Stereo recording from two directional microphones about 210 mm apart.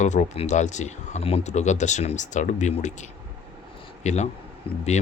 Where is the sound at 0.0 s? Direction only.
35° left (ahead or behind).